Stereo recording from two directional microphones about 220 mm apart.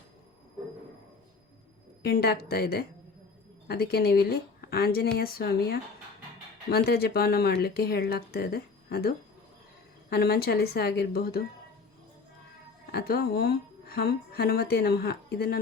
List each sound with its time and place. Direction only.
2.0 s a woman's voice: 45° left (ahead or behind)
12.9 s a woman's voice: 45° left (ahead or behind)